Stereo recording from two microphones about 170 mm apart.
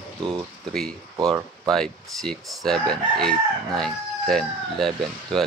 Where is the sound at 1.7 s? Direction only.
5° left (ahead or behind).